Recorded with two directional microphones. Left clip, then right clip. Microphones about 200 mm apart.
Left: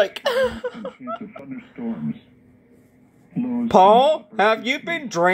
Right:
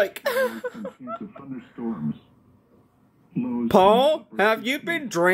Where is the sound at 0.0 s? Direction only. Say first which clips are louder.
Left 3 dB; 10° right (ahead or behind).